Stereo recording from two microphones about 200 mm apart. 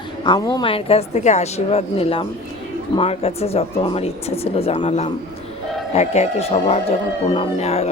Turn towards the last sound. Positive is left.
turn(degrees=30)  # may be behind; listen again after turning